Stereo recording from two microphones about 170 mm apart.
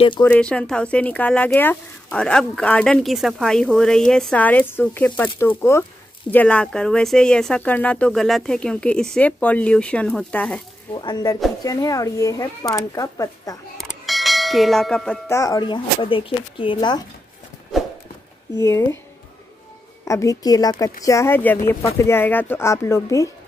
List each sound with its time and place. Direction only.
0.2 s speech: 10° left (ahead or behind)
10.9 s speech: 25° left (ahead or behind)
13.7 s a sound: centre (ahead or behind)
15.2 s speech: 20° left (ahead or behind)
17.7 s clip-clop: centre (ahead or behind)
18.6 s speech: 15° left (ahead or behind)
20.1 s speech: 20° left (ahead or behind)